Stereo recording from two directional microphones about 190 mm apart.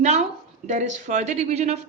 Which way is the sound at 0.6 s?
40° right (ahead or behind).